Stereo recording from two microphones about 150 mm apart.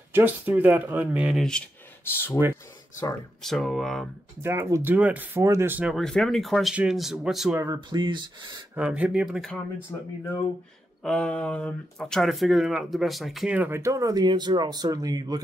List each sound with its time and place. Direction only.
0.1 s speech: 10° right (ahead or behind)
2.0 s speech: 15° left (ahead or behind)
3.4 s speech: centre (ahead or behind)
4.4 s speech: 15° right (ahead or behind)
5.9 s speech: 5° left (ahead or behind)
7.5 s speech: 25° right (ahead or behind)
8.7 s speech: 10° right (ahead or behind)
11.1 s speech: 5° left (ahead or behind); by 15.4 s 25° right (ahead or behind)